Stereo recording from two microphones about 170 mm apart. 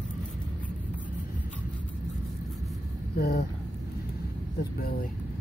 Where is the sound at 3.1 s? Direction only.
65° left (ahead or behind).